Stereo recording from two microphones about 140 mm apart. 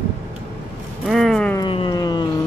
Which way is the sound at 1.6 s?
35° left (ahead or behind).